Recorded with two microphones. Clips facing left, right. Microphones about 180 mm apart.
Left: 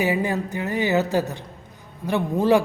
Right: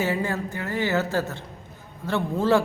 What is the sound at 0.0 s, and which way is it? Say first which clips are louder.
A woman's voice: left 3 dB; 15° left (ahead or behind).